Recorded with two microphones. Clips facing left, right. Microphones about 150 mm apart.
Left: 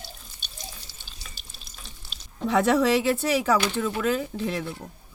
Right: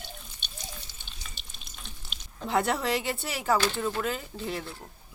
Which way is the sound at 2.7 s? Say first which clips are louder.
Left 8 dB; 90° left.